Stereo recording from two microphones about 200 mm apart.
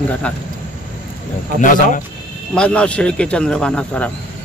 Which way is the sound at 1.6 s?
40° left (ahead or behind).